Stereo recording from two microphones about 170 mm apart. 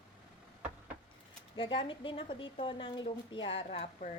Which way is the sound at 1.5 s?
30° left (ahead or behind).